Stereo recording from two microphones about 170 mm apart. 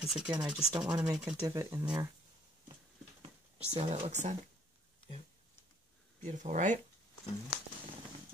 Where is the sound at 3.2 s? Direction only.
35° right (ahead or behind).